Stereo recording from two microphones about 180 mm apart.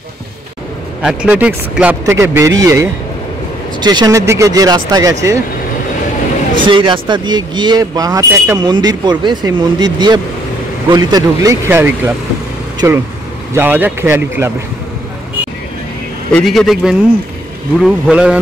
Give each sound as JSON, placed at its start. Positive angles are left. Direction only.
{"t": 1.0, "sound": "speech", "side_deg": -5}
{"t": 6.6, "sound": "speech", "side_deg": -25}
{"t": 16.3, "sound": "a man's voice", "side_deg": 5}